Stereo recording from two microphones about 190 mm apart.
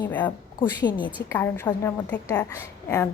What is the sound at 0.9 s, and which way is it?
Speech, 25° left (ahead or behind).